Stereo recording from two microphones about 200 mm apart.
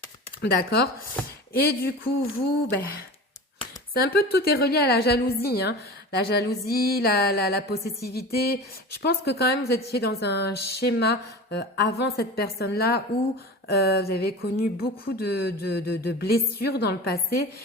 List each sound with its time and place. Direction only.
0.5 s a woman's voice: 50° left (ahead or behind)